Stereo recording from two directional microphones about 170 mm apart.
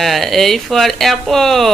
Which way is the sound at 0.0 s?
Centre (ahead or behind).